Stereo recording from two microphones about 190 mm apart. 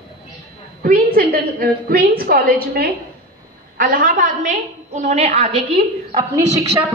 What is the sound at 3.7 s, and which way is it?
A woman's voice, 50° right (ahead or behind).